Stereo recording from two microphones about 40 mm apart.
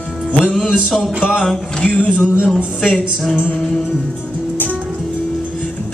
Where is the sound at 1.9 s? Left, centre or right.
Left.